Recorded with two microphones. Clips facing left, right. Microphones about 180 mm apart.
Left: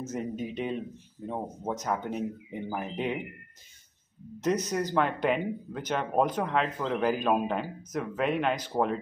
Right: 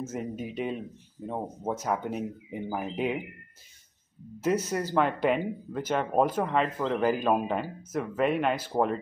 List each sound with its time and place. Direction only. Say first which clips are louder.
0.0 s speech: left 1 dB; 5° right (ahead or behind)
4.4 s speech: right 1 dB; 5° right (ahead or behind)